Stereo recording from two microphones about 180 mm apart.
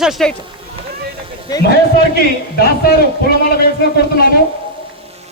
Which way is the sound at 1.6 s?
60° left (ahead or behind).